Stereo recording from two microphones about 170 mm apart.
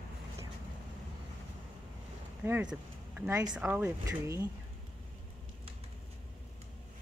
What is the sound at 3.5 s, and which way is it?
Speech, 10° right (ahead or behind).